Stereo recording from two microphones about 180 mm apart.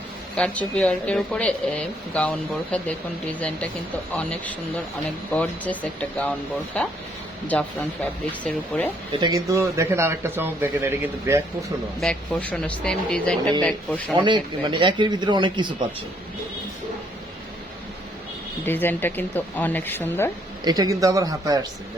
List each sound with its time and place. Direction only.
0.3 s speech: 5° left (ahead or behind)
4.1 s speech: 5° left (ahead or behind)
9.2 s speech: 20° right (ahead or behind)
11.9 s speech: 5° left (ahead or behind)
14.2 s speech: 25° right (ahead or behind)
18.6 s speech: 10° left (ahead or behind)
20.7 s speech: 20° right (ahead or behind)